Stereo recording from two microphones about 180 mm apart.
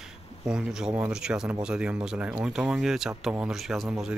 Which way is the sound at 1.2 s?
5° right (ahead or behind).